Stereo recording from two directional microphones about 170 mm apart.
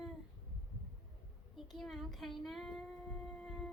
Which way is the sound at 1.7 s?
Centre (ahead or behind).